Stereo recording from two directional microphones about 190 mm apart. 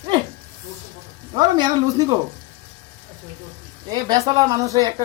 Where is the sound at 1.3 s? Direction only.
25° right (ahead or behind).